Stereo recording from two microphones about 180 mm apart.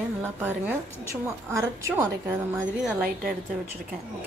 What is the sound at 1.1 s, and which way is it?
A woman's voice, 15° right (ahead or behind).